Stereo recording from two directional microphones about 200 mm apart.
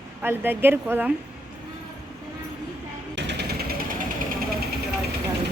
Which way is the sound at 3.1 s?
55° right (ahead or behind).